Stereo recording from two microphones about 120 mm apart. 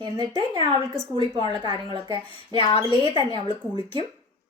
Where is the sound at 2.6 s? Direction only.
45° left (ahead or behind).